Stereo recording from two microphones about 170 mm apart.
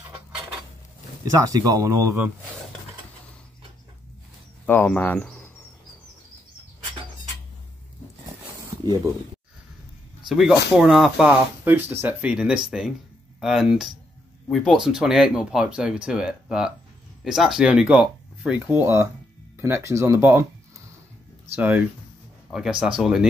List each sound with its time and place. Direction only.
1.4 s speech: 20° right (ahead or behind)
4.6 s speech: 10° left (ahead or behind)
8.8 s speech: 25° right (ahead or behind)
10.2 s speech: 5° right (ahead or behind)
18.7 s speech: 15° right (ahead or behind)
21.5 s speech: 10° right (ahead or behind)